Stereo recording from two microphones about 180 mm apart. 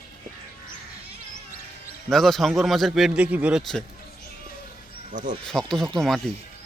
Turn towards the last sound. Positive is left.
turn(degrees=0)  # may be behind; listen again after turning